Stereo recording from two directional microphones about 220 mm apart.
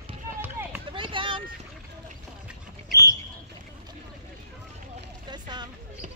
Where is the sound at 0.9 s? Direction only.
25° right (ahead or behind).